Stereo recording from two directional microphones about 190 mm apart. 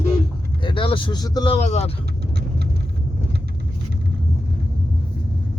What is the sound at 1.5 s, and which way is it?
Speech, 35° left (ahead or behind).